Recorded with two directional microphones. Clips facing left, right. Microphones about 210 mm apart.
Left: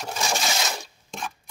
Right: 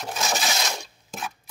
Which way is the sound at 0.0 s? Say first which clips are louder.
Even; centre (ahead or behind).